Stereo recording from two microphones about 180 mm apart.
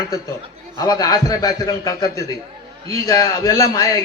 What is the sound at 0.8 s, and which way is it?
A man's voice, 20° left (ahead or behind).